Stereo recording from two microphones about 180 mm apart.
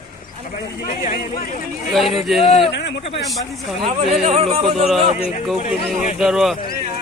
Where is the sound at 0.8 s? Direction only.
55° left (ahead or behind).